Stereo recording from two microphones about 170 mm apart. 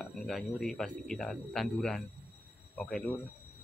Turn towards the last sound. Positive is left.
turn(degrees=10)  # may be behind; listen again after turning